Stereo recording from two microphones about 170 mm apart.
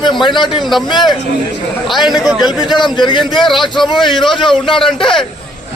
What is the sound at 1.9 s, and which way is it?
Speech, centre (ahead or behind).